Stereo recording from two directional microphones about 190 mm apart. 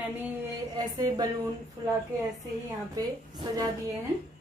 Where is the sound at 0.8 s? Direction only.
20° right (ahead or behind).